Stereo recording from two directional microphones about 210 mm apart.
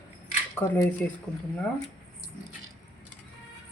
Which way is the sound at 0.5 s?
10° left (ahead or behind).